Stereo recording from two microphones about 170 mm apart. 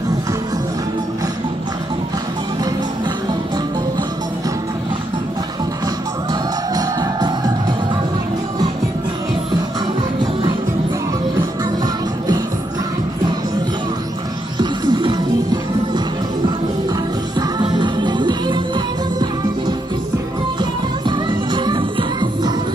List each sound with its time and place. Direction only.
6.7 s music: 25° right (ahead or behind)
14.6 s music: 25° right (ahead or behind)
17.4 s music: 25° right (ahead or behind)
21.1 s music: 25° right (ahead or behind)